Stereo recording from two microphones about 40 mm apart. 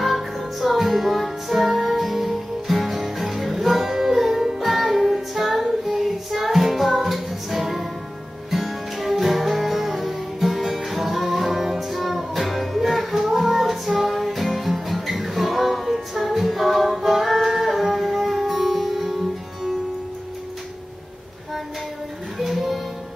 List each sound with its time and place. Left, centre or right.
0.0 s music: centre
22.4 s music: centre